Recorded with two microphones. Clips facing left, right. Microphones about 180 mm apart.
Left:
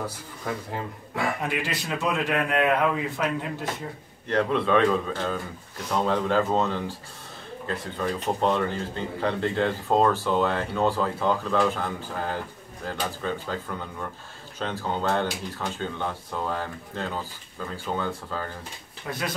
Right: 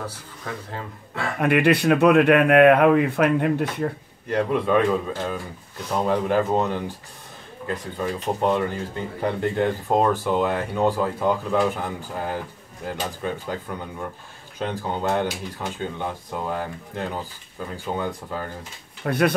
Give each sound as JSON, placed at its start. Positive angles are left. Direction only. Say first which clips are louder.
{"t": 0.0, "sound": "speech", "louder": "left 1 dB", "side_deg": 10}
{"t": 1.4, "sound": "speech", "louder": "right 11 dB", "side_deg": -60}
{"t": 4.3, "sound": "speech", "louder": "right 2 dB", "side_deg": -10}
{"t": 19.0, "sound": "speech", "louder": "right 10 dB", "side_deg": -60}